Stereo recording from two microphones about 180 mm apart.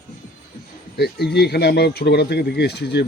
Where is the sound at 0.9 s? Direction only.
65° left (ahead or behind).